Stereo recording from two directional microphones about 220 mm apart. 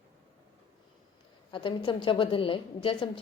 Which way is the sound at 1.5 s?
25° left (ahead or behind).